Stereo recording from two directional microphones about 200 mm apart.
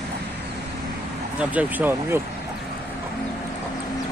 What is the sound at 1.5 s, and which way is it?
Speech, 10° right (ahead or behind).